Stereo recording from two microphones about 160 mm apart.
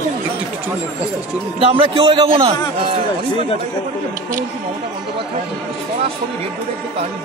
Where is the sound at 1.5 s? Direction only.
35° right (ahead or behind).